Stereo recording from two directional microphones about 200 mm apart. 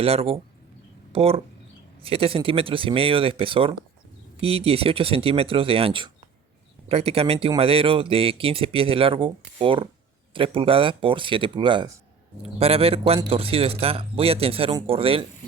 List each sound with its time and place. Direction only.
0.0 s speech: 30° right (ahead or behind)